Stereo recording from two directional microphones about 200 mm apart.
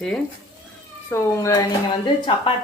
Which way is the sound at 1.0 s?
15° left (ahead or behind).